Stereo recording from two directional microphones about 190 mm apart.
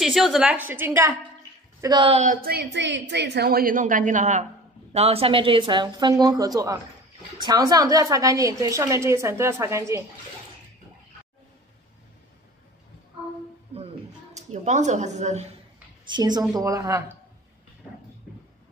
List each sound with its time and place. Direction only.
0.0 s a woman's voice: centre (ahead or behind); by 2.2 s 25° right (ahead or behind)
2.2 s a woman's voice: 55° right (ahead or behind); by 10.0 s 15° right (ahead or behind)
14.3 s a woman's voice: 40° right (ahead or behind)
16.1 s a woman's voice: 20° right (ahead or behind)